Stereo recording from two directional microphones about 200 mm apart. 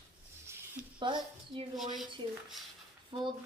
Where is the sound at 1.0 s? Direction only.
25° right (ahead or behind).